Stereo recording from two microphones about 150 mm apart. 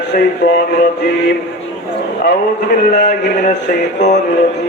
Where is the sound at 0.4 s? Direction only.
90° left.